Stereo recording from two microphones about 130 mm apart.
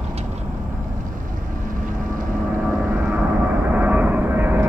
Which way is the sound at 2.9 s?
20° right (ahead or behind).